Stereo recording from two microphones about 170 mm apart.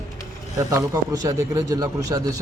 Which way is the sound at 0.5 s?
20° right (ahead or behind).